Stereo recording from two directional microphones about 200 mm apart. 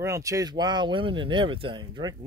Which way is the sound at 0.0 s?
15° right (ahead or behind).